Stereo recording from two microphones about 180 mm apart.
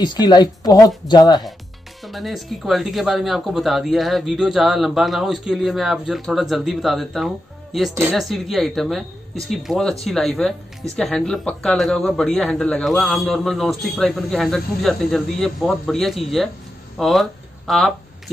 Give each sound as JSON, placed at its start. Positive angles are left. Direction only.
{"t": 0.0, "sound": "speech", "side_deg": 25}
{"t": 2.0, "sound": "speech", "side_deg": 0}